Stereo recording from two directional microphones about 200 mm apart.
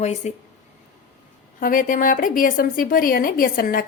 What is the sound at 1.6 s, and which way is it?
A woman's voice, 45° left (ahead or behind).